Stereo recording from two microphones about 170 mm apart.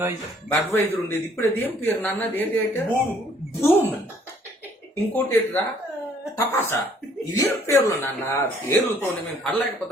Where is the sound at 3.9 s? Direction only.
10° right (ahead or behind).